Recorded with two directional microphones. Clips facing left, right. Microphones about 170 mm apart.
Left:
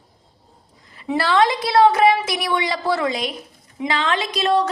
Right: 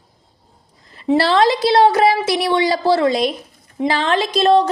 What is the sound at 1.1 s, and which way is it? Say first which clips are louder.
A woman's voice: right 4 dB; 35° right (ahead or behind).